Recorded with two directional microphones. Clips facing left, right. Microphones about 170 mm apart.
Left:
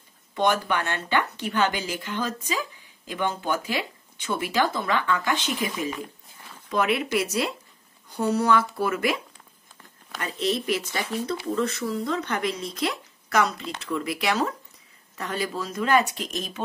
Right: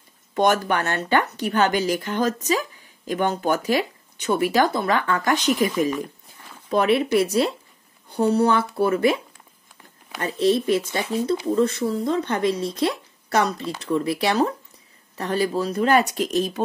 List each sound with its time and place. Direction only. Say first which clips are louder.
0.3 s speech: right 4 dB; 45° right (ahead or behind)
6.7 s speech: right 5 dB; 35° right (ahead or behind)
10.2 s speech: right 7 dB; 30° right (ahead or behind)